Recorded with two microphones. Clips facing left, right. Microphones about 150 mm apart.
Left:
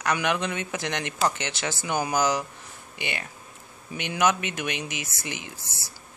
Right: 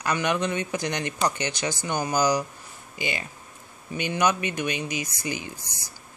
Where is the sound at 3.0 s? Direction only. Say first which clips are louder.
Right 3 dB; 65° left (ahead or behind).